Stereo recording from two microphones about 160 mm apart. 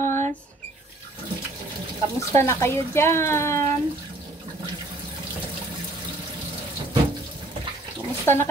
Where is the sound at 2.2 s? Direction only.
15° left (ahead or behind).